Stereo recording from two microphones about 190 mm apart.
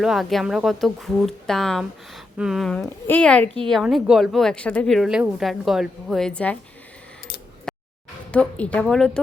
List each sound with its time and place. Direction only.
0.0 s speech: centre (ahead or behind)
7.7 s a sound: centre (ahead or behind)
8.3 s a woman's voice: 5° left (ahead or behind)